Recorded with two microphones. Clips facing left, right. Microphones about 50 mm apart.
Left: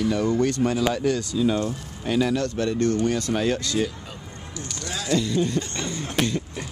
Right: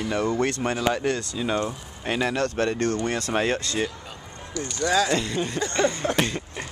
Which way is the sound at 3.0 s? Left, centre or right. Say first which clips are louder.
Left 3 dB; right.